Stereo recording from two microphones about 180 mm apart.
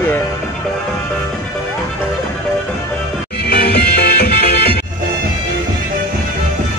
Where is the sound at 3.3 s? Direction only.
60° left (ahead or behind).